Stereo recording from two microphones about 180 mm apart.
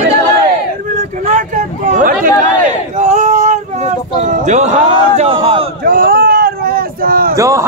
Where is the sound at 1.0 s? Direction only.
45° right (ahead or behind).